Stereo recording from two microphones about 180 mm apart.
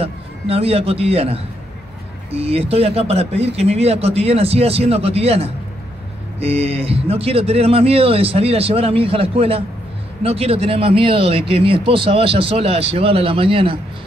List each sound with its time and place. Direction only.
0.0 s a man's voice: 35° right (ahead or behind)